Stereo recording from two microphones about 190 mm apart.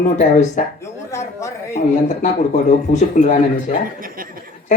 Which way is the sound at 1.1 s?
15° left (ahead or behind).